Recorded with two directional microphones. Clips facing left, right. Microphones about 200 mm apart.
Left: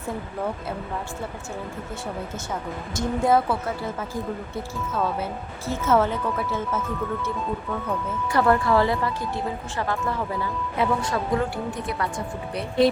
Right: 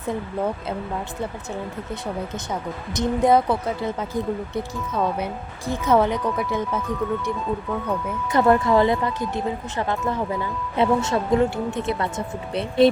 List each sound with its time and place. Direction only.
2.5 s a woman's voice: 20° right (ahead or behind)